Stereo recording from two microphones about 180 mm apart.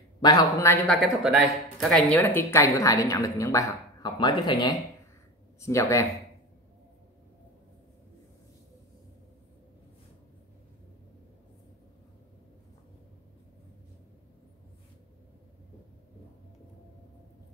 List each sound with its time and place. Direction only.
0.2 s a man's voice: 20° left (ahead or behind)
0.8 s speech: centre (ahead or behind); by 6.0 s 15° left (ahead or behind)